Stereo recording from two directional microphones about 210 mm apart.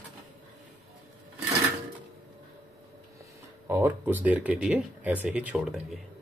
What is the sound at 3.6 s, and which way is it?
Speech, 10° right (ahead or behind).